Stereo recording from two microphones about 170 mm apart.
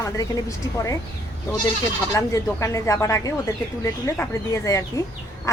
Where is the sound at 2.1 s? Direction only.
20° left (ahead or behind).